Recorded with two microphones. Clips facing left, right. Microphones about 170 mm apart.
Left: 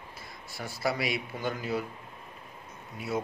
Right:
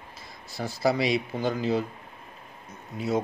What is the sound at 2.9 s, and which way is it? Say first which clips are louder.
Speech: right 6 dB; 20° right (ahead or behind).